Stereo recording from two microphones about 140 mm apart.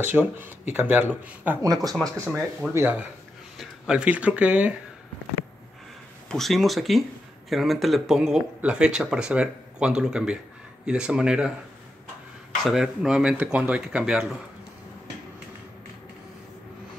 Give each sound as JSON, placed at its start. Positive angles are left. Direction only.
{"t": 0.0, "sound": "speech", "side_deg": -15}
{"t": 1.6, "sound": "speech", "side_deg": -25}
{"t": 3.5, "sound": "speech", "side_deg": -5}
{"t": 6.3, "sound": "speech", "side_deg": 0}
{"t": 12.6, "sound": "speech", "side_deg": 0}